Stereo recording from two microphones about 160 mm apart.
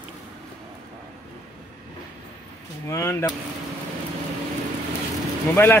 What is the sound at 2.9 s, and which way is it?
Speech, 15° left (ahead or behind).